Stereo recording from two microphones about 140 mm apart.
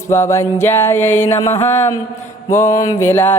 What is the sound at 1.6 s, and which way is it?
Mantra, 15° left (ahead or behind).